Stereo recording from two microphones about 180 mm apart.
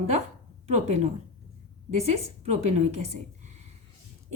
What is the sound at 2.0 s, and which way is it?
A woman's voice, 35° right (ahead or behind).